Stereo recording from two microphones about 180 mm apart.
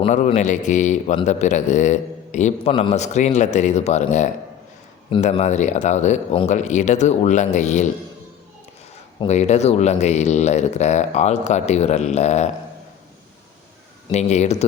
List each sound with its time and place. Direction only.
0.0 s a man's voice: 35° left (ahead or behind)
9.2 s a man's voice: 40° left (ahead or behind)
14.1 s a man's voice: 40° left (ahead or behind)